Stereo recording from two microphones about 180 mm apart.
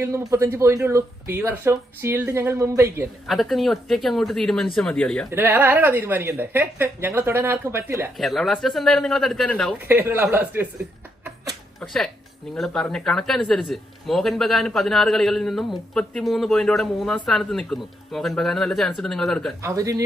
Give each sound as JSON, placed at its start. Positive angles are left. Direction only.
{"t": 0.0, "sound": "speech", "side_deg": -15}
{"t": 3.3, "sound": "speech", "side_deg": 0}
{"t": 5.3, "sound": "speech", "side_deg": -10}
{"t": 8.2, "sound": "speech", "side_deg": 0}
{"t": 9.8, "sound": "speech", "side_deg": -10}
{"t": 11.8, "sound": "speech", "side_deg": 0}
{"t": 19.6, "sound": "speech", "side_deg": -20}